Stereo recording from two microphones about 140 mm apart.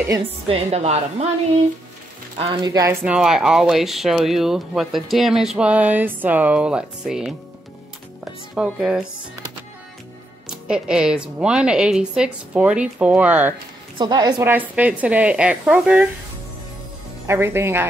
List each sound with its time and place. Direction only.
0.2 s music: 45° right (ahead or behind)
2.3 s speech: 30° right (ahead or behind)
3.2 s speech: 5° right (ahead or behind)
8.5 s speech: 5° right (ahead or behind)
10.4 s speech: 5° right (ahead or behind)
13.9 s a woman's voice: 30° right (ahead or behind)
14.4 s speech: 15° right (ahead or behind)
17.3 s speech: 15° right (ahead or behind)